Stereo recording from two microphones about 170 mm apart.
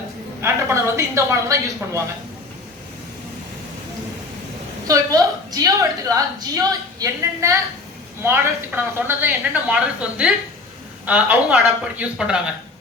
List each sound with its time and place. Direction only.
0.4 s a woman's voice: 15° right (ahead or behind)
4.9 s a woman's voice: 20° right (ahead or behind); by 12.4 s 5° right (ahead or behind)